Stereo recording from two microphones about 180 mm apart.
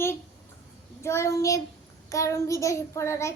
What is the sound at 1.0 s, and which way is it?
A child's voice, 15° left (ahead or behind).